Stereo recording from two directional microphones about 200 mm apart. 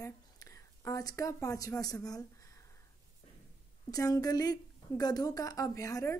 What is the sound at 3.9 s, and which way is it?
Speech, 20° left (ahead or behind).